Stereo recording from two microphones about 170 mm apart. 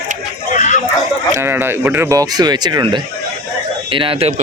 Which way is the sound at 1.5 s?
10° right (ahead or behind).